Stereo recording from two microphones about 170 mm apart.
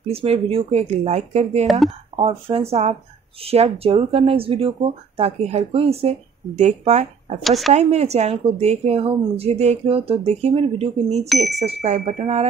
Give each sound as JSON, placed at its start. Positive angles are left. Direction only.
{"t": 0.0, "sound": "speech", "side_deg": -35}
{"t": 7.4, "sound": "speech", "side_deg": 0}
{"t": 7.7, "sound": "speech", "side_deg": -40}
{"t": 11.2, "sound": "speech", "side_deg": 0}
{"t": 11.8, "sound": "speech", "side_deg": -45}